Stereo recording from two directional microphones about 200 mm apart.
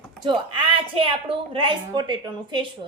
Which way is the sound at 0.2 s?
25° right (ahead or behind).